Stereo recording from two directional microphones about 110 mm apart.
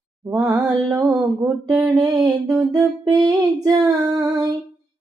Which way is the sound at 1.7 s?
5° right (ahead or behind).